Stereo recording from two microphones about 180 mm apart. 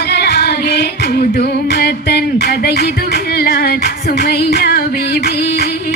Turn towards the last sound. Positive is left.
turn(degrees=60)  # may be behind; listen again after turning